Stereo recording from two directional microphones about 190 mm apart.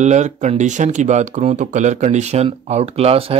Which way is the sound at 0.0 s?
40° right (ahead or behind).